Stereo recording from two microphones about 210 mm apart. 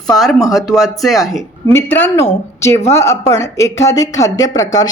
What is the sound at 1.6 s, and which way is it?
A woman's voice, 10° left (ahead or behind).